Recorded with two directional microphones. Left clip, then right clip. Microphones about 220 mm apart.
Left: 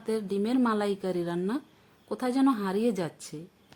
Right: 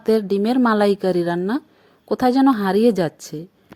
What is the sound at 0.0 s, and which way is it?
A woman's voice, 30° right (ahead or behind).